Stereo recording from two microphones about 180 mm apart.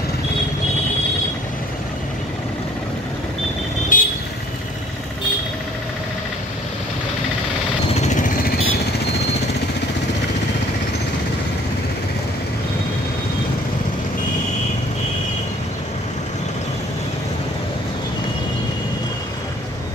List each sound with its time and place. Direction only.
3.9 s vehicle: 50° left (ahead or behind)
7.9 s a sound: 40° left (ahead or behind)
8.5 s vehicle: 60° left (ahead or behind)